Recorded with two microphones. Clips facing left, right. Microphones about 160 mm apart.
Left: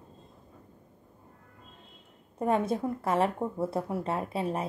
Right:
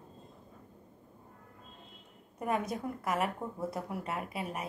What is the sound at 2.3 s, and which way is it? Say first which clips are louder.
A woman's voice: left 6 dB; 25° left (ahead or behind).